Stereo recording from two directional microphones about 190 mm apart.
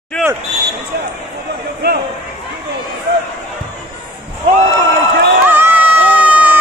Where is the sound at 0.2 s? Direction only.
Centre (ahead or behind).